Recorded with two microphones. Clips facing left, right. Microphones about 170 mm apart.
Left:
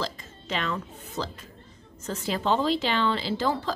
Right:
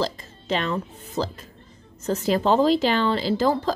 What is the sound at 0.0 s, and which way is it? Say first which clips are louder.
Speech: right 6 dB; 35° right (ahead or behind).